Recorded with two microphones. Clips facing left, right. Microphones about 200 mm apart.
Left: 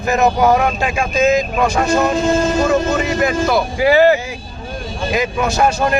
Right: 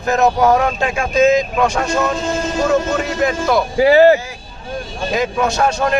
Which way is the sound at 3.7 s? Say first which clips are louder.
Right 3 dB; 35° right (ahead or behind).